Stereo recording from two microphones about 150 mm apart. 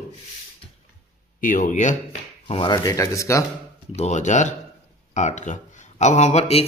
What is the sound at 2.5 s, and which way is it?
Speech, 30° left (ahead or behind).